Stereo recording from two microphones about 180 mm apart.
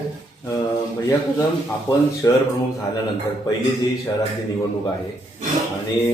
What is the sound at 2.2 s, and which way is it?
Speech, 20° left (ahead or behind).